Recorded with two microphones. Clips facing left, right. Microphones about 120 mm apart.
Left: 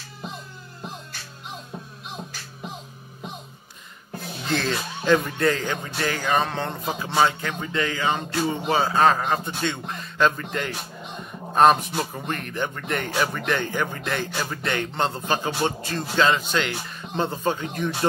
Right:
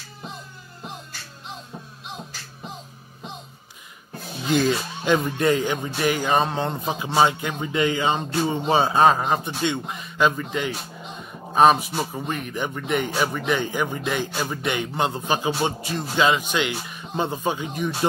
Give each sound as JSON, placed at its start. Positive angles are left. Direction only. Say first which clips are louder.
{"t": 4.5, "sound": "speech", "louder": "right 5 dB", "side_deg": -10}